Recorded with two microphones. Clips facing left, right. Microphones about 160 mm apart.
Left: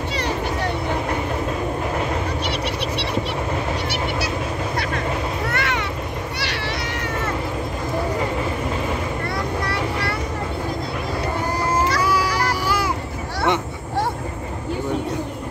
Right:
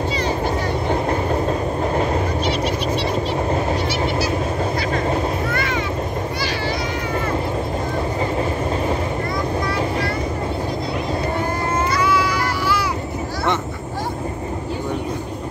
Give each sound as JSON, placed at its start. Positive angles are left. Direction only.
{"t": 5.5, "sound": "vehicle", "side_deg": 70}
{"t": 12.0, "sound": "vehicle", "side_deg": 40}